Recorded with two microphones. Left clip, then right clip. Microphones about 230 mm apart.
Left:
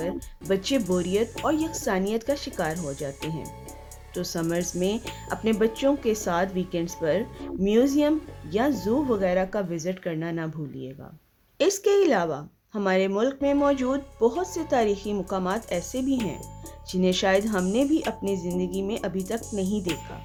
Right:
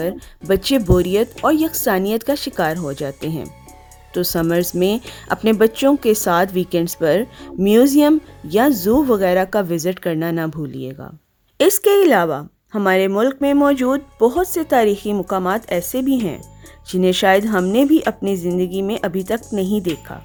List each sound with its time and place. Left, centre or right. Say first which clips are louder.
0.0 s speech: right 7 dB; right